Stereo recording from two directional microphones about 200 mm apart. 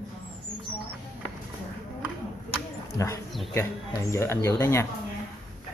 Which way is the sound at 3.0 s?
15° left (ahead or behind).